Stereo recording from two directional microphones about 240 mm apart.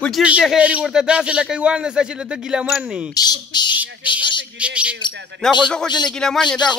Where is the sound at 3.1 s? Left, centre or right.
Centre.